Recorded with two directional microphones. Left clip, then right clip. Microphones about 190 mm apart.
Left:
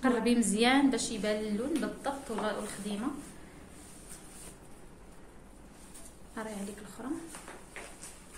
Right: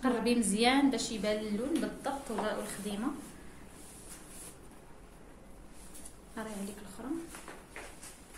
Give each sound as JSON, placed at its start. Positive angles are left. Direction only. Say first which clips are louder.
{"t": 0.0, "sound": "a woman's voice", "louder": "left 2 dB", "side_deg": 20}
{"t": 6.4, "sound": "a woman's voice", "louder": "left 2 dB", "side_deg": 10}